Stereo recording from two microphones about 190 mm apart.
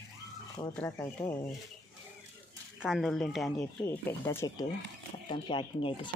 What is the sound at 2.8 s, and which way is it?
Speech, centre (ahead or behind).